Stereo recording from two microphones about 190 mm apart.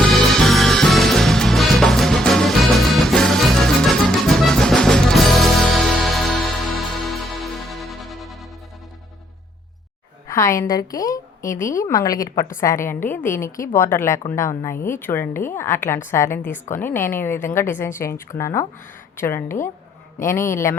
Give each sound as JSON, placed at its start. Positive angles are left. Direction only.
{"t": 0.1, "sound": "music", "side_deg": 0}
{"t": 10.2, "sound": "a woman's voice", "side_deg": 15}